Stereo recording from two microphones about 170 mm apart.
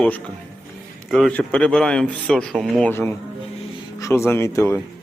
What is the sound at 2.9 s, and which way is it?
Speech, 15° left (ahead or behind).